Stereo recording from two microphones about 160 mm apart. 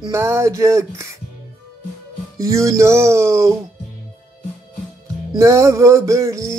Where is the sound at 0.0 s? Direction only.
15° right (ahead or behind).